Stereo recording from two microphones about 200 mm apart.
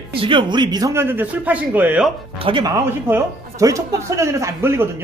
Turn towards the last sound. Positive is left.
turn(degrees=-10)  # may be behind; listen again after turning